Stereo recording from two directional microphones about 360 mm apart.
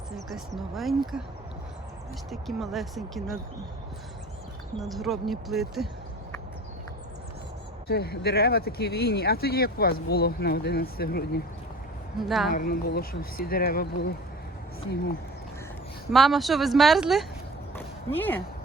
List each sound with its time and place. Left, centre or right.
0.3 s speech: centre
2.3 s speech: centre
4.8 s speech: centre
7.9 s speech: left
12.3 s speech: centre
12.5 s speech: left
16.1 s speech: centre
17.7 s a sound: centre